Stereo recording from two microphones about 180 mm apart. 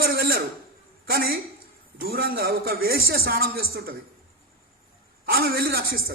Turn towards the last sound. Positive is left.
turn(degrees=-55)  # may be behind; listen again after turning